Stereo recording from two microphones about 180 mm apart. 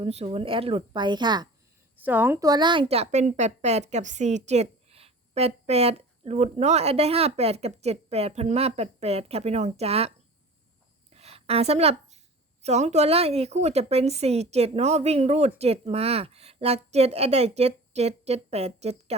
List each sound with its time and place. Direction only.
0.0 s a woman's voice: 35° right (ahead or behind)
2.0 s a woman's voice: 10° right (ahead or behind); by 10.1 s 35° right (ahead or behind)
11.1 s a sound: 35° right (ahead or behind)
12.6 s a woman's voice: 40° right (ahead or behind)